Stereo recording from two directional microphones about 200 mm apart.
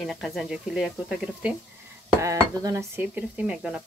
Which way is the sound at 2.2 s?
15° right (ahead or behind).